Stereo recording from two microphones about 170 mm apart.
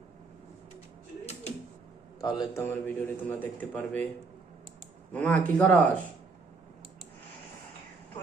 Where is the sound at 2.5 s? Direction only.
15° left (ahead or behind).